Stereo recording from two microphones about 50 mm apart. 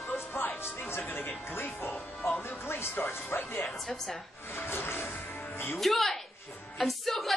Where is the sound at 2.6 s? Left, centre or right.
Left.